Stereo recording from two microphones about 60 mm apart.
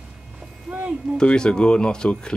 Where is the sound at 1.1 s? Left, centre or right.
Centre.